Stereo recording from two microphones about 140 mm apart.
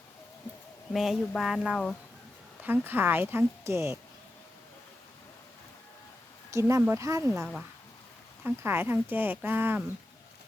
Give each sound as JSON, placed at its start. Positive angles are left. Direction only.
{"t": 0.9, "sound": "speech", "side_deg": 0}
{"t": 2.6, "sound": "speech", "side_deg": -15}
{"t": 6.5, "sound": "speech", "side_deg": -20}
{"t": 8.4, "sound": "speech", "side_deg": -15}